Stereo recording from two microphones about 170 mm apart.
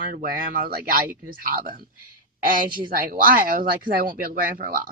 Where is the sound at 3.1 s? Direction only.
55° right (ahead or behind).